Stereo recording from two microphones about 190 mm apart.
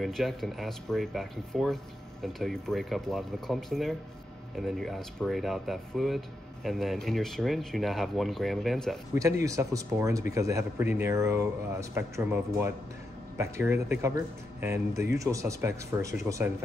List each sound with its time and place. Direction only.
0.0 s speech: centre (ahead or behind)
9.1 s a man's voice: 15° right (ahead or behind)